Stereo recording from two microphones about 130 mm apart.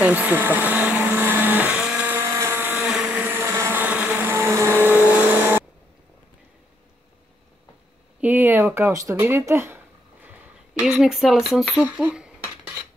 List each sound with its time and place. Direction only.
0.0 s blender: 15° right (ahead or behind)
8.2 s speech: 15° right (ahead or behind)
10.2 s a sound: 5° right (ahead or behind)